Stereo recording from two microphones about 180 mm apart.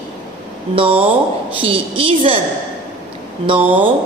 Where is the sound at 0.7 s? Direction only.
30° right (ahead or behind).